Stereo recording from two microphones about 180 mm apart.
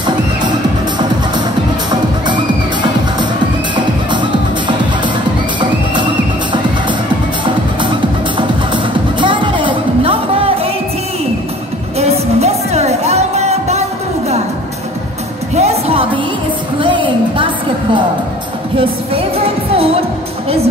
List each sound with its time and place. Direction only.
1.9 s music: 25° right (ahead or behind)
7.4 s music: 25° right (ahead or behind)
12.0 s music: 35° right (ahead or behind)
15.5 s music: 35° right (ahead or behind)
16.8 s a sound: 30° right (ahead or behind)
18.8 s music: 30° right (ahead or behind)